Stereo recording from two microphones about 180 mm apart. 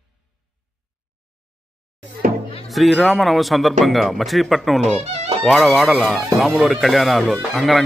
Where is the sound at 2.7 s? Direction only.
Centre (ahead or behind).